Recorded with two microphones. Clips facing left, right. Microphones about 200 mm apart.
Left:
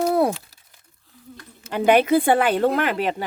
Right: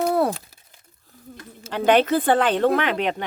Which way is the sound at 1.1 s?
45° right (ahead or behind).